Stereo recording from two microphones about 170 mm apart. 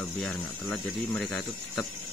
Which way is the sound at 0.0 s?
Centre (ahead or behind).